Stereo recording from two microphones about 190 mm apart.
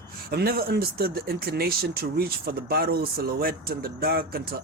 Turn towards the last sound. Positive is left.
turn(degrees=-50)  # may be behind; listen again after turning